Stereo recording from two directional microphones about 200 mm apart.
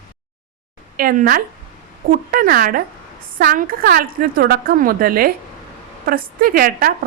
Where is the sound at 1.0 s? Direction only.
45° right (ahead or behind).